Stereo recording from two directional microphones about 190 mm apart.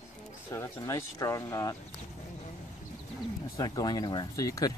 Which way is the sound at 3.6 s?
20° left (ahead or behind).